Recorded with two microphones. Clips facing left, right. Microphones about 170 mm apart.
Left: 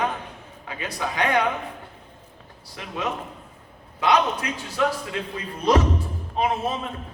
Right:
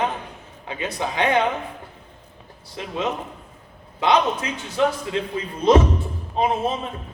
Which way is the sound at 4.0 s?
25° right (ahead or behind).